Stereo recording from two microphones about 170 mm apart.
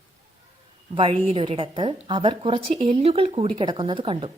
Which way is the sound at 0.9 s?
30° right (ahead or behind).